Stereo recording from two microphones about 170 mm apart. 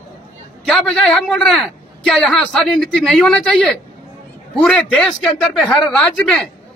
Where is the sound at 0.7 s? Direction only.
5° left (ahead or behind).